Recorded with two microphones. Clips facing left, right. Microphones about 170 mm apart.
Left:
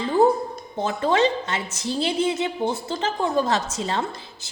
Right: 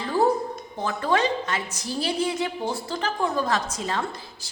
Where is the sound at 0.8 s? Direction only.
25° left (ahead or behind).